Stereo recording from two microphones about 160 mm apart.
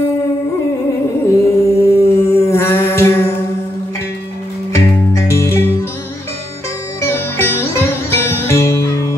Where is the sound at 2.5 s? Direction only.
15° left (ahead or behind).